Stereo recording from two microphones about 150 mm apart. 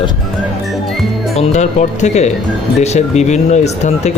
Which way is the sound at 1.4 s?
50° left (ahead or behind).